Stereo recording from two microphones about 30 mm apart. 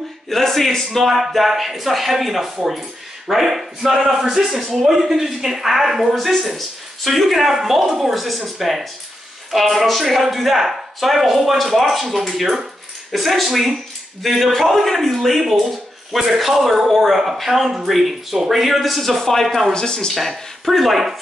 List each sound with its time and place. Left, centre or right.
0.3 s a man's voice: centre
16.1 s speech: centre
19.7 s speech: left
20.2 s speech: centre